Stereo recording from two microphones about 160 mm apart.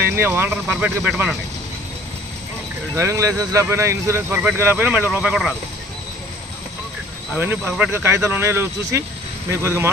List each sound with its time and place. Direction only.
0.1 s speech: 15° right (ahead or behind)
3.0 s speech: 20° right (ahead or behind)
7.3 s speech: 10° right (ahead or behind)